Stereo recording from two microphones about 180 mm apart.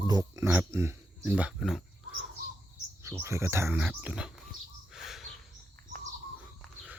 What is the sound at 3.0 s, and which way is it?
Speech, 15° right (ahead or behind).